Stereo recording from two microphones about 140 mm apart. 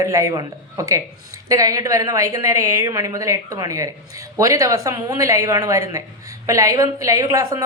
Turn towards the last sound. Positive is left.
turn(degrees=-25)  # may be behind; listen again after turning